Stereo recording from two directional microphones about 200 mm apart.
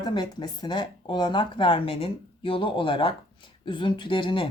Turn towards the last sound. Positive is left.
turn(degrees=25)  # may be behind; listen again after turning